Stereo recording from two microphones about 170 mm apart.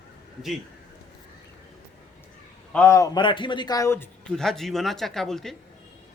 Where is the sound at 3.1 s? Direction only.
30° left (ahead or behind).